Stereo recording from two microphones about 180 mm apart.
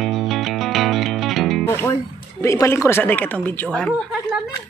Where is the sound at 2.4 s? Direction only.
15° left (ahead or behind).